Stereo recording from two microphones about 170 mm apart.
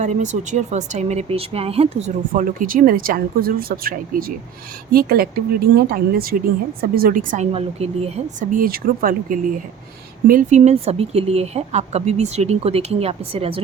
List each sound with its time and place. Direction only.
0.0 s speech: 45° right (ahead or behind)
7.5 s speech: 40° right (ahead or behind)
8.5 s speech: 60° right (ahead or behind); by 13.6 s 35° right (ahead or behind)